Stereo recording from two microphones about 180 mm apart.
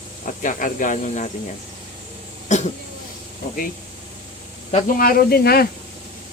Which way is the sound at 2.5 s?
40° left (ahead or behind).